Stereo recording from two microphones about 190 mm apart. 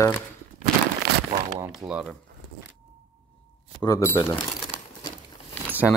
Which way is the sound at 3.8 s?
15° left (ahead or behind).